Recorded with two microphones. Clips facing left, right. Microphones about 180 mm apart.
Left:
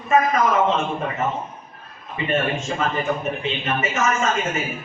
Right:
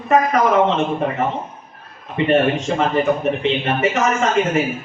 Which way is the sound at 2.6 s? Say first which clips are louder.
Right 6 dB; 60° right (ahead or behind).